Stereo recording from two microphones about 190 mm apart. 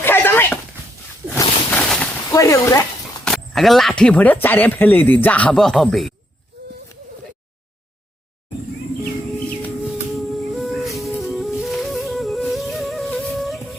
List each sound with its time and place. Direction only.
0.0 s a sound: 10° left (ahead or behind)
2.3 s speech: 15° left (ahead or behind)
3.2 s speech: centre (ahead or behind)
10.5 s music: centre (ahead or behind)